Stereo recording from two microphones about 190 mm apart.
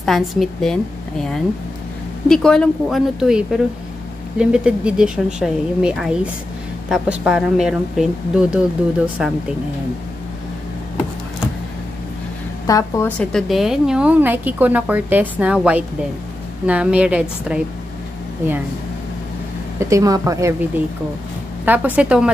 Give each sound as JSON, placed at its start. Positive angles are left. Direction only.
{"t": 0.0, "sound": "speech", "side_deg": 0}
{"t": 2.2, "sound": "speech", "side_deg": 5}
{"t": 12.6, "sound": "a woman's voice", "side_deg": 15}
{"t": 13.2, "sound": "a woman's voice", "side_deg": 0}
{"t": 19.8, "sound": "a woman's voice", "side_deg": -15}